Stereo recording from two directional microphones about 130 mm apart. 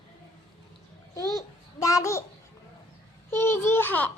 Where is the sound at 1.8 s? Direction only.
25° left (ahead or behind).